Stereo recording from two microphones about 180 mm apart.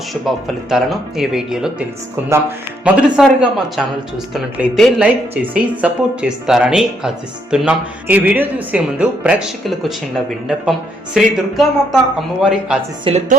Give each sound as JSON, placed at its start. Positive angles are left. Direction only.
{"t": 0.1, "sound": "speech", "side_deg": 0}
{"t": 2.8, "sound": "a man's voice", "side_deg": -5}
{"t": 13.1, "sound": "speech", "side_deg": -40}